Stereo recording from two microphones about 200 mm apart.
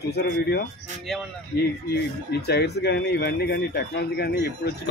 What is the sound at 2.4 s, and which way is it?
Speech, 55° left (ahead or behind).